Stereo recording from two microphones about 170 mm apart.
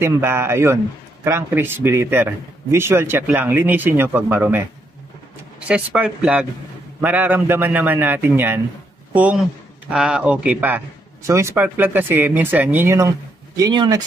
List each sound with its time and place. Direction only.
0.0 s a man's voice: 15° right (ahead or behind)
5.7 s a man's voice: 5° right (ahead or behind); by 14.0 s 25° right (ahead or behind)